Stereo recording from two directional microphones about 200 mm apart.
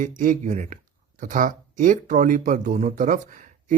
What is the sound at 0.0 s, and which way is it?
Speech, 40° right (ahead or behind).